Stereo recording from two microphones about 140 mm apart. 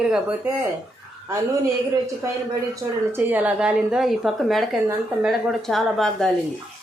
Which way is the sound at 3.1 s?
15° right (ahead or behind).